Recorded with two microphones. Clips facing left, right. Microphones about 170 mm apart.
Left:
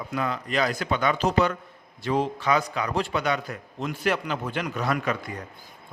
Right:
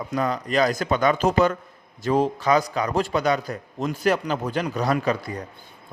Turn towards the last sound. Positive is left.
turn(degrees=-35)  # may be behind; listen again after turning